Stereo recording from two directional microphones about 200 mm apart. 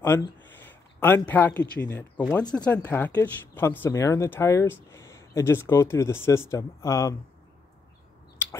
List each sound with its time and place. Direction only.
0.1 s speech: 10° left (ahead or behind)
0.6 s a sound: 10° left (ahead or behind)
1.8 s speech: 10° left (ahead or behind)